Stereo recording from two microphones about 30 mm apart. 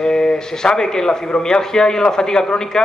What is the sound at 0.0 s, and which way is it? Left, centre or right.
A man's voice, left.